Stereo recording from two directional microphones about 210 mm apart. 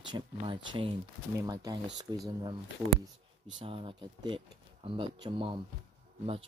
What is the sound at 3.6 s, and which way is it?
Speech, 25° right (ahead or behind).